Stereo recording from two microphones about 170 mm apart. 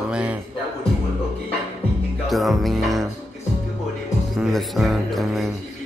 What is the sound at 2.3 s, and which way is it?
Speech, centre (ahead or behind).